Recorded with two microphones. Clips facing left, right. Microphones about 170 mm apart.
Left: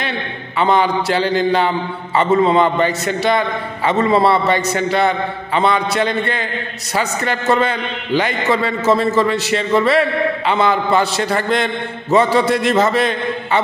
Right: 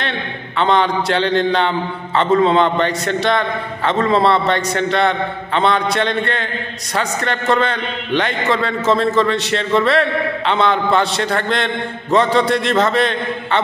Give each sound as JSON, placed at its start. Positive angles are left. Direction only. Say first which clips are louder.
{"t": 0.6, "sound": "a man's voice", "louder": "left 1 dB", "side_deg": 5}